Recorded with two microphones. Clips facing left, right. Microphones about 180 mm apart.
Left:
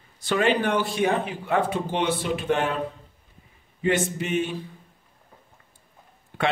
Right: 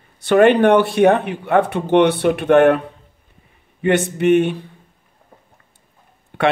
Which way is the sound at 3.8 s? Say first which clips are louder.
Right 8 dB; 65° right (ahead or behind).